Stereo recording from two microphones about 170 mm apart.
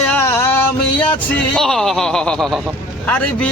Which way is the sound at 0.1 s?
10° left (ahead or behind).